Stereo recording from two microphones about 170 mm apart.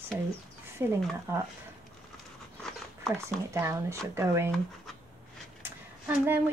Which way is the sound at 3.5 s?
15° right (ahead or behind).